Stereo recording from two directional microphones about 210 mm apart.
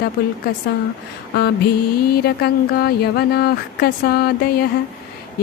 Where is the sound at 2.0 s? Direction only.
45° left (ahead or behind).